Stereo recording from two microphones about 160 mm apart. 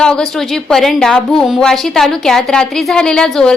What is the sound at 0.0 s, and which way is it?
A woman's voice, 5° left (ahead or behind).